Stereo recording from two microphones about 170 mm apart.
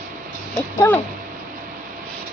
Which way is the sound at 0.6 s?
10° left (ahead or behind).